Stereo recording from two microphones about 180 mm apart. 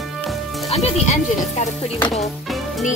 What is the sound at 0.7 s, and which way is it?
Speech, 35° left (ahead or behind).